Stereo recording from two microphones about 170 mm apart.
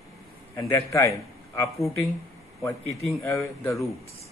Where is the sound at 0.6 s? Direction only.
15° left (ahead or behind).